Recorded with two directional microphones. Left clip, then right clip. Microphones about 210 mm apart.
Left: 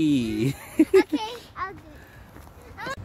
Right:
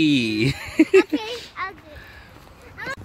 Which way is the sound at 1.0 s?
45° left (ahead or behind).